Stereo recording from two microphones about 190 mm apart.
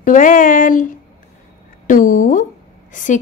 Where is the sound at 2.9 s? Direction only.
45° left (ahead or behind).